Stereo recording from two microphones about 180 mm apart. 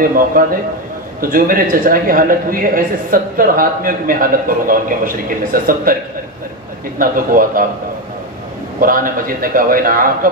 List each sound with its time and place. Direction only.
0.0 s a man's voice: 50° right (ahead or behind)
7.0 s a man's voice: 50° right (ahead or behind)
8.7 s a man's voice: 50° right (ahead or behind)